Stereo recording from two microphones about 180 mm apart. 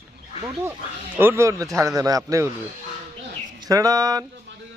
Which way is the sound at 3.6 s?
20° right (ahead or behind).